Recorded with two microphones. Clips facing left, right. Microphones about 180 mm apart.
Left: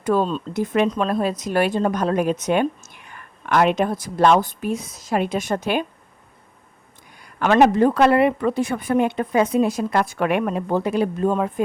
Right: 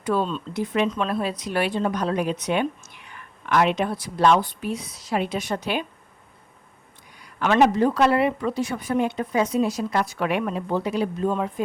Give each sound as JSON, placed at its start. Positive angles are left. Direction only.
{"t": 0.0, "sound": "speech", "side_deg": 45}
{"t": 7.2, "sound": "speech", "side_deg": 50}